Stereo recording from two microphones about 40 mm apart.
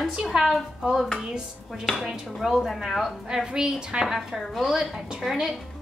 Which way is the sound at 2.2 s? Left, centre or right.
Centre.